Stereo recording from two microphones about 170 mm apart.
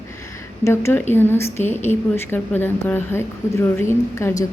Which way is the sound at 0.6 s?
15° left (ahead or behind).